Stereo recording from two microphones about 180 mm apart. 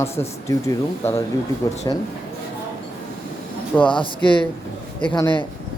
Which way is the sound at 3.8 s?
25° left (ahead or behind).